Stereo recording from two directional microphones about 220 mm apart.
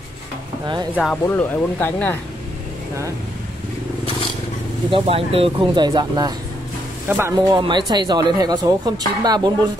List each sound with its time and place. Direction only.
0.9 s speech: 5° left (ahead or behind)
4.9 s speech: 25° right (ahead or behind); by 7.3 s 10° right (ahead or behind)
7.5 s speech: 20° right (ahead or behind)